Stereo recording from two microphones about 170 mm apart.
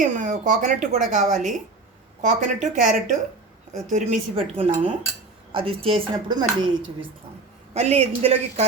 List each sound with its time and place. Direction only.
0.0 s speech: 50° right (ahead or behind); by 6.7 s 30° right (ahead or behind)
7.7 s speech: 40° right (ahead or behind)